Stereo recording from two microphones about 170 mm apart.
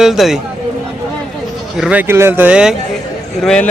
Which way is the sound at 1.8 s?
10° right (ahead or behind).